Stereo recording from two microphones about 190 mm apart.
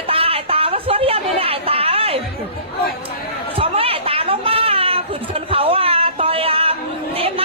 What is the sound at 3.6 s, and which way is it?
Children playing, 30° right (ahead or behind).